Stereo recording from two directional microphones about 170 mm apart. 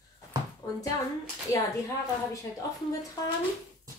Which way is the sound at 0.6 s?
20° left (ahead or behind).